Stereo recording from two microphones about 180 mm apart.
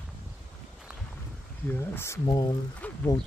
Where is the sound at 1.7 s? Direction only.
15° left (ahead or behind).